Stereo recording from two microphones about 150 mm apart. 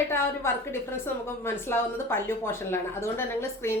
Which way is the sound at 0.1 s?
15° left (ahead or behind).